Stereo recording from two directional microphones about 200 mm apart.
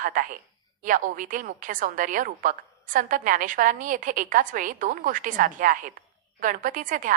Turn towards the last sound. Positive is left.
turn(degrees=-40)  # may be behind; listen again after turning